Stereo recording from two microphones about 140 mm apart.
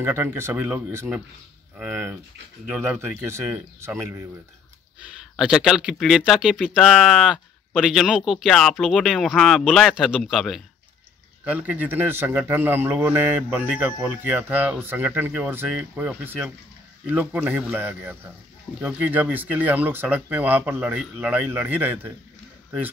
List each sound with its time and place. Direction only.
0.0 s a man's voice: 15° right (ahead or behind)
5.3 s a man's voice: 5° right (ahead or behind)